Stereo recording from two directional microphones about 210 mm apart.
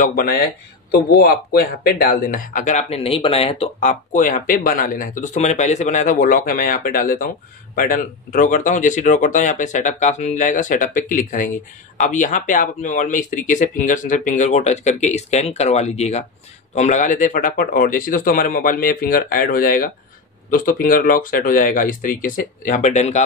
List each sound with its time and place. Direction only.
0.0 s speech: 40° left (ahead or behind)